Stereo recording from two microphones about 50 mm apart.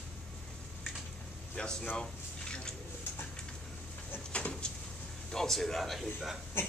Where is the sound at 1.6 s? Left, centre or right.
Centre.